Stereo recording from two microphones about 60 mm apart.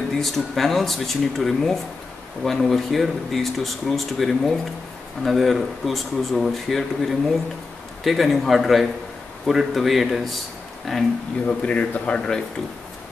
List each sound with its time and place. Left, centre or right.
0.1 s speech: centre
11.4 s speech: left